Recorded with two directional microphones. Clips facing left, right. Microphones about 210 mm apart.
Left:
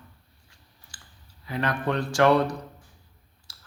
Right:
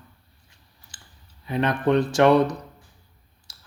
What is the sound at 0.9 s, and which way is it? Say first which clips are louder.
Clicking: right 1 dB; 20° right (ahead or behind).